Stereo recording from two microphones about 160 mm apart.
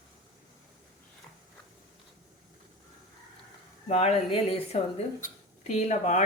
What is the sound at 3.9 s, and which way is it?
A woman's voice, 40° left (ahead or behind).